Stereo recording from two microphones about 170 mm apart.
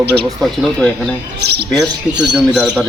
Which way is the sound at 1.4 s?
75° right (ahead or behind).